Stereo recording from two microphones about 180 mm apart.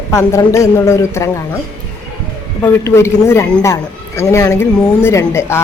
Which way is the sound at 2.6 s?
15° left (ahead or behind).